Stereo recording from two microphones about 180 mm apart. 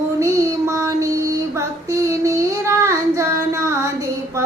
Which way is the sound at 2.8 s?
15° right (ahead or behind).